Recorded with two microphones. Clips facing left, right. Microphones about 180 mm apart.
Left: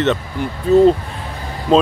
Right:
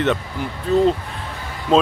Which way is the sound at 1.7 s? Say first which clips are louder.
Left 3 dB; 40° left (ahead or behind).